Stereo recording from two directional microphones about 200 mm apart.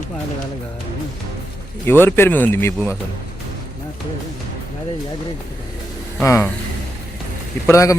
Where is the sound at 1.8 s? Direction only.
10° left (ahead or behind).